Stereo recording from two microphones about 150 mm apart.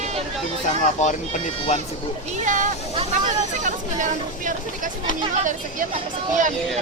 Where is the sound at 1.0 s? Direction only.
45° left (ahead or behind).